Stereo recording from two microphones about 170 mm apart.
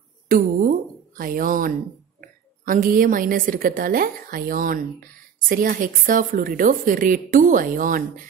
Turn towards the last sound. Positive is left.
turn(degrees=-50)  # may be behind; listen again after turning